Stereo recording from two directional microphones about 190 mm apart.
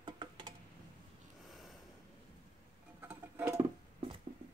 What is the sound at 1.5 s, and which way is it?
Snort, centre (ahead or behind).